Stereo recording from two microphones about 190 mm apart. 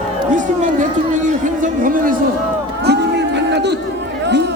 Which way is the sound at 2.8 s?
60° right (ahead or behind).